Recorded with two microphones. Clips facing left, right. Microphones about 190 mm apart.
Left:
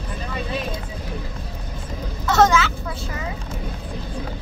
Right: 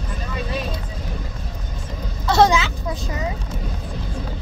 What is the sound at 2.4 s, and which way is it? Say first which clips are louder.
Vehicle: right 1 dB; 15° right (ahead or behind).